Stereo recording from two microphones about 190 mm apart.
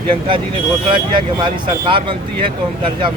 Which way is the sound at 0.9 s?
25° right (ahead or behind).